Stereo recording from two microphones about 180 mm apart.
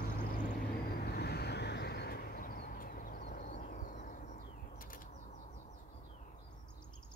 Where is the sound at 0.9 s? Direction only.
60° left (ahead or behind); by 5.4 s 45° left (ahead or behind).